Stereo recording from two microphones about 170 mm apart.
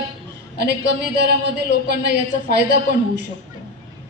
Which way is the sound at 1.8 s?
75° right (ahead or behind).